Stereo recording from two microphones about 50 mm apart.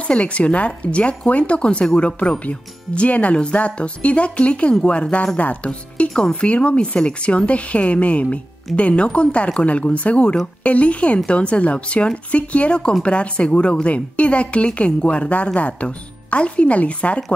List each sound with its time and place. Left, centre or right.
0.0 s speech: left